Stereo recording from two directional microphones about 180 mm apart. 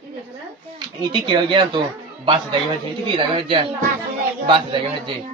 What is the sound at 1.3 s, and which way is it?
Speech, 25° right (ahead or behind).